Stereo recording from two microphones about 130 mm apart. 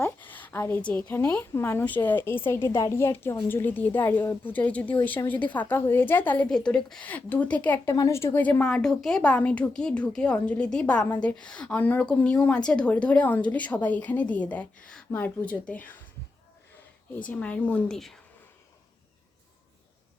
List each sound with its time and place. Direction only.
0.0 s a woman's voice: 15° left (ahead or behind)
7.9 s a woman's voice: 25° left (ahead or behind)
17.2 s a woman's voice: 10° left (ahead or behind)